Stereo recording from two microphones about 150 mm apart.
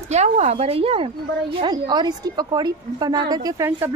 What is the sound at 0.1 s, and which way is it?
Speech, 50° right (ahead or behind).